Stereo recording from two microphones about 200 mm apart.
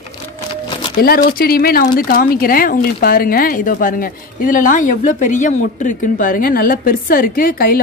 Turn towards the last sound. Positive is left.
turn(degrees=45)  # may be behind; listen again after turning